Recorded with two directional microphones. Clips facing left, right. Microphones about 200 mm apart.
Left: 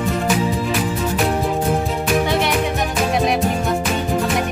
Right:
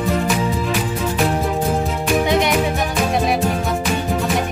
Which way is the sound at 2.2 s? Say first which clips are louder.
Right 2 dB; 15° right (ahead or behind).